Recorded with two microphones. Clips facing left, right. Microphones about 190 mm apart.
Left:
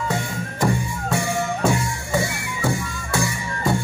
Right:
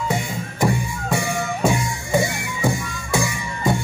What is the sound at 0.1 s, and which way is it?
Music, 15° right (ahead or behind).